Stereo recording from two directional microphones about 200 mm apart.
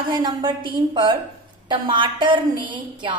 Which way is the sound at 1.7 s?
25° right (ahead or behind).